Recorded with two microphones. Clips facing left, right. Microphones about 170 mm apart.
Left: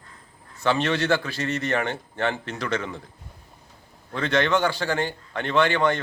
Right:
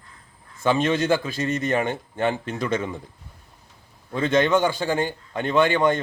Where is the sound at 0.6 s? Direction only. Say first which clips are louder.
Right 2 dB; 15° right (ahead or behind).